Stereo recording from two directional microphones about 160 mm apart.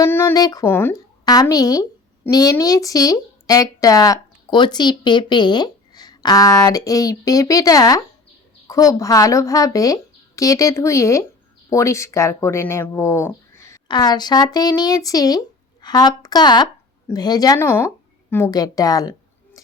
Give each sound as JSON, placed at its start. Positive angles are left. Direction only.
{"t": 0.0, "sound": "a woman's voice", "side_deg": 15}